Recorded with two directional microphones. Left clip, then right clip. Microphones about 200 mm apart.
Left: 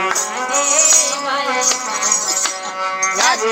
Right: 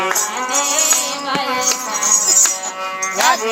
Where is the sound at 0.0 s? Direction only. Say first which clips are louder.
Even; 30° right (ahead or behind).